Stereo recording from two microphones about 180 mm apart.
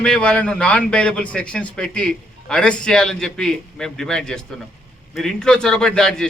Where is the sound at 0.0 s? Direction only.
5° left (ahead or behind).